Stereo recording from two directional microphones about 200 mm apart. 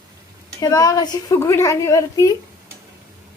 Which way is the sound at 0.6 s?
20° left (ahead or behind).